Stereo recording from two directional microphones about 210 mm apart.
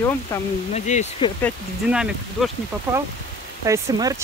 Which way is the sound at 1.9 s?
5° right (ahead or behind).